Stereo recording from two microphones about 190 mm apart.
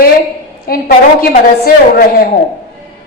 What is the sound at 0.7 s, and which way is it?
A woman's voice, 50° left (ahead or behind).